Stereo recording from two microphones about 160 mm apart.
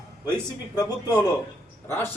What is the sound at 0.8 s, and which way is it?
Speech, 25° left (ahead or behind).